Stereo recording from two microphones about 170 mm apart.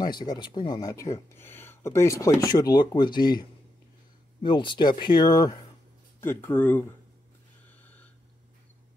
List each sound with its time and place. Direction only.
0.0 s speech: 25° left (ahead or behind)
6.2 s speech: 10° left (ahead or behind)
7.8 s a sound: 10° left (ahead or behind)